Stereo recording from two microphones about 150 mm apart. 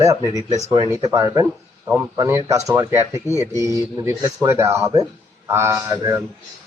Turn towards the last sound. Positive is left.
turn(degrees=-20)  # may be behind; listen again after turning